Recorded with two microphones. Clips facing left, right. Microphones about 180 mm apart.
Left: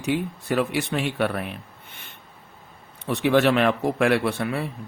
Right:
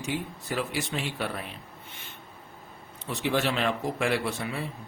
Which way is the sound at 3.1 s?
60° left (ahead or behind).